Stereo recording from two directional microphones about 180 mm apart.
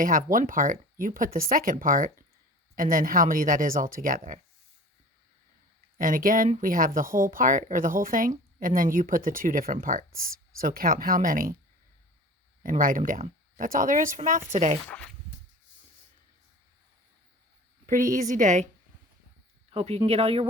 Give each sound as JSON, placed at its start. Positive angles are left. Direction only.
{"t": 0.0, "sound": "speech", "side_deg": -50}
{"t": 6.0, "sound": "speech", "side_deg": -50}
{"t": 12.6, "sound": "speech", "side_deg": -50}
{"t": 14.8, "sound": "speech", "side_deg": 5}
{"t": 17.8, "sound": "speech", "side_deg": -45}
{"t": 19.7, "sound": "speech", "side_deg": -35}